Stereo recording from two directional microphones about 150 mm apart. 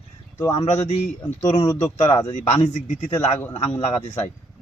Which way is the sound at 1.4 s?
40° left (ahead or behind).